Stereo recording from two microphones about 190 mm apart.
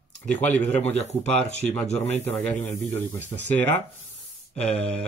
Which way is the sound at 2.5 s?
40° left (ahead or behind).